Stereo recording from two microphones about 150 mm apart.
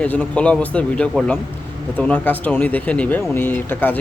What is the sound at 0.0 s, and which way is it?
Speech, 10° left (ahead or behind).